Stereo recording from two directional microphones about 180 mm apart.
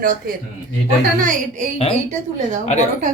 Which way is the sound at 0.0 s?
50° right (ahead or behind).